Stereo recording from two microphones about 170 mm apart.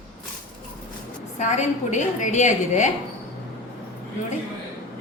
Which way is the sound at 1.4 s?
45° left (ahead or behind).